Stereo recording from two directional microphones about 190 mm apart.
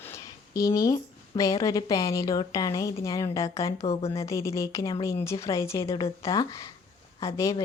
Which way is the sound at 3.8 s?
35° left (ahead or behind).